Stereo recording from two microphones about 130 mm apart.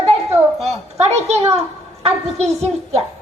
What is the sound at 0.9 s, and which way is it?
A child's voice, 55° right (ahead or behind).